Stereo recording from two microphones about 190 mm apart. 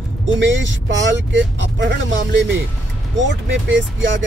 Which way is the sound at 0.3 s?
75° right (ahead or behind).